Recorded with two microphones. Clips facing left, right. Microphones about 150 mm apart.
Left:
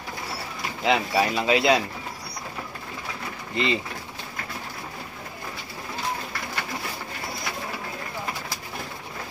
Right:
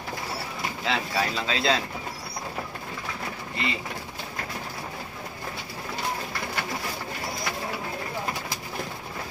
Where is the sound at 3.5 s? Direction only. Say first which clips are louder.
Left 7 dB; 20° left (ahead or behind).